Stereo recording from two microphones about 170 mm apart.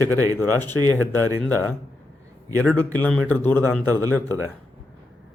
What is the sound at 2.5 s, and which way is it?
Speech, 10° left (ahead or behind).